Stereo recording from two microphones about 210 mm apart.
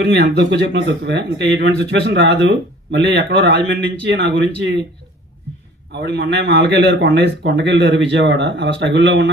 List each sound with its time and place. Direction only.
0.0 s a man's voice: 55° right (ahead or behind)
3.3 s a man's voice: 55° right (ahead or behind)
5.9 s a man's voice: 55° right (ahead or behind)